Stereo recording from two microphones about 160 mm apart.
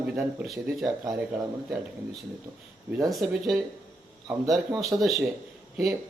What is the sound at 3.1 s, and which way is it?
Speech, centre (ahead or behind).